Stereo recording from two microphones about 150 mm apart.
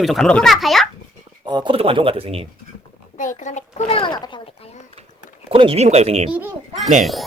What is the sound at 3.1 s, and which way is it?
Speech, 55° left (ahead or behind).